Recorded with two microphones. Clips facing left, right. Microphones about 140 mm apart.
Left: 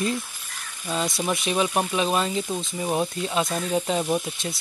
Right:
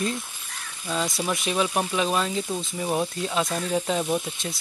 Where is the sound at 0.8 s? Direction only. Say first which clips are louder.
Left 1 dB; 10° left (ahead or behind).